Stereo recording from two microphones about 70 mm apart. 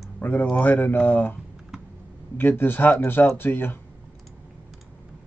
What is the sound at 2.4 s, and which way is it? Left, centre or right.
Speech, left.